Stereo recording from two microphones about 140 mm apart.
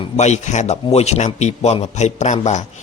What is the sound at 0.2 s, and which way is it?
Speech, 55° left (ahead or behind).